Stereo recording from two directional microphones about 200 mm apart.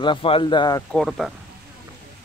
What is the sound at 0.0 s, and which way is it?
Speech, 25° left (ahead or behind).